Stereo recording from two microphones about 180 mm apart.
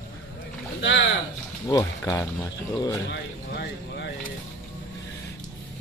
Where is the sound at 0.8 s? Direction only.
90° left.